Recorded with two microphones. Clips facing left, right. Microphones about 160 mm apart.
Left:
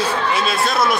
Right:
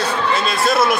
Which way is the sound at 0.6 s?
Centre (ahead or behind).